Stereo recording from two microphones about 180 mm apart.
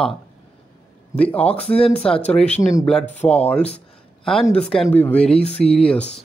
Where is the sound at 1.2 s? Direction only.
10° left (ahead or behind).